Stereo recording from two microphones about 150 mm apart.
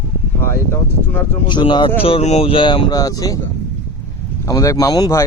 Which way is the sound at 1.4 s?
30° left (ahead or behind).